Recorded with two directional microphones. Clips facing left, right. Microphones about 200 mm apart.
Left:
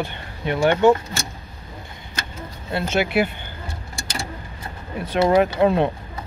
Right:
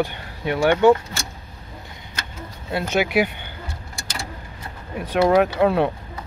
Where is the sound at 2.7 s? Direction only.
10° right (ahead or behind).